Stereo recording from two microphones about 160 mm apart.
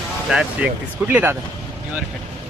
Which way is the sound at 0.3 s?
5° right (ahead or behind).